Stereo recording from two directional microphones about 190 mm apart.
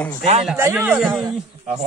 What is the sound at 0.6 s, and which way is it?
Speech, 10° right (ahead or behind).